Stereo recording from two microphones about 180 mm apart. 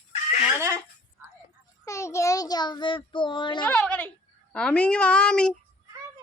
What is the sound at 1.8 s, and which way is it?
Child singing, 15° left (ahead or behind).